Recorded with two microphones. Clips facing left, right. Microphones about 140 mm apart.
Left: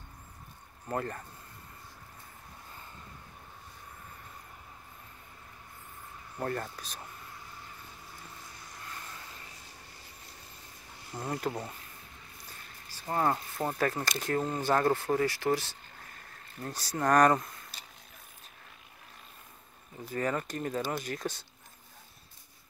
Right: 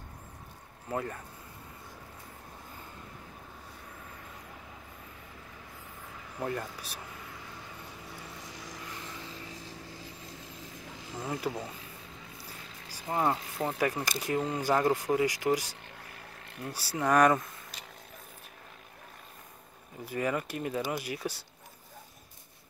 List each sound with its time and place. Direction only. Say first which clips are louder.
0.8 s speech: even; 5° right (ahead or behind)
6.4 s speech: even; 10° right (ahead or behind)
8.4 s vehicle: right 5 dB; 90° right
11.1 s speech: even; 5° right (ahead or behind)
12.9 s speech: even; 15° right (ahead or behind)
20.1 s speech: right 1 dB; 10° right (ahead or behind)